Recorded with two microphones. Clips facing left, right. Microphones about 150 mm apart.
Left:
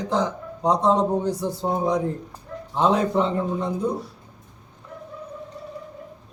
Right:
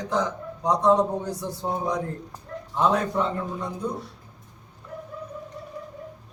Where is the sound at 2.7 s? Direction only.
25° left (ahead or behind).